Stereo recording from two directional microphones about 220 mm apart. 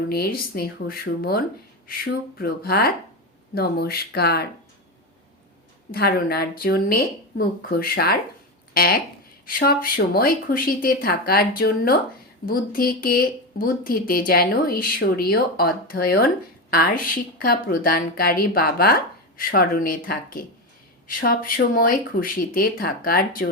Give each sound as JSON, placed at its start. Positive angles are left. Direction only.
{"t": 0.1, "sound": "a woman's voice", "side_deg": 45}
{"t": 5.9, "sound": "a woman's voice", "side_deg": 45}